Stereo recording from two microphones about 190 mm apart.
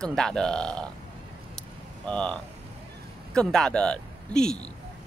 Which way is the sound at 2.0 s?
5° left (ahead or behind).